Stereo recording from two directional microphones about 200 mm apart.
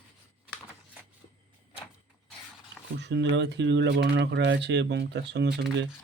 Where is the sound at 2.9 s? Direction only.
60° right (ahead or behind).